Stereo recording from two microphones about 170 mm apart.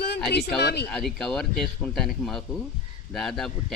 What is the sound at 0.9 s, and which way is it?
A man's voice, centre (ahead or behind).